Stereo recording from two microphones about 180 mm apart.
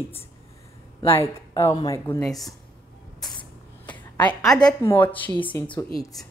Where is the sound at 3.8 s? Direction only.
10° left (ahead or behind).